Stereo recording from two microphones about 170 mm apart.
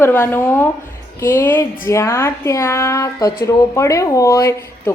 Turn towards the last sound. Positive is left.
turn(degrees=20)  # may be behind; listen again after turning